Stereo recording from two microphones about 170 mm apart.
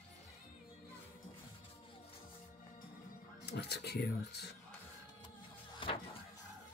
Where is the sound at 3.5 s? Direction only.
70° left (ahead or behind).